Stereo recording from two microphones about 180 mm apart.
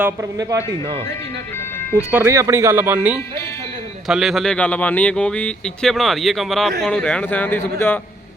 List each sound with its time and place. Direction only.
0.0 s speech: 15° right (ahead or behind)
2.0 s speech: 10° right (ahead or behind); by 7.9 s 10° left (ahead or behind)